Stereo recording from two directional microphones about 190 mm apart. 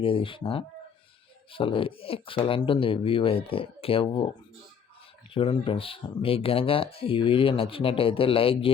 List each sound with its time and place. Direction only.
0.0 s speech: 25° left (ahead or behind)
5.3 s speech: 30° left (ahead or behind)